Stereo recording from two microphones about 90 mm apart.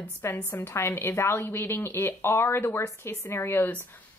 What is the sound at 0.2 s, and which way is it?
A woman's voice, 25° left (ahead or behind).